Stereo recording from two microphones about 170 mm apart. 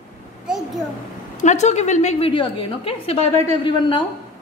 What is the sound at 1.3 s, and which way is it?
A woman's voice, 45° left (ahead or behind).